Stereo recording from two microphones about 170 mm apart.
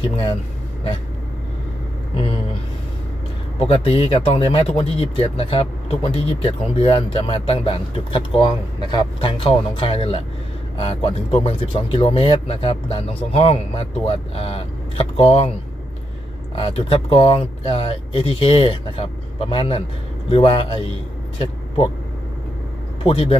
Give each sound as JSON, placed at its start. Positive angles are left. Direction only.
{"t": 0.0, "sound": "speech", "side_deg": 30}
{"t": 2.1, "sound": "speech", "side_deg": 30}
{"t": 3.6, "sound": "speech", "side_deg": 35}
{"t": 11.4, "sound": "speech", "side_deg": 30}
{"t": 16.5, "sound": "speech", "side_deg": 30}
{"t": 23.0, "sound": "speech", "side_deg": 30}